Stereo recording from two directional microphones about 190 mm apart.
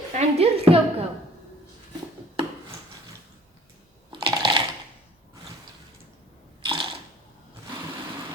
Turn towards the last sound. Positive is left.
turn(degrees=-25)  # may be behind; listen again after turning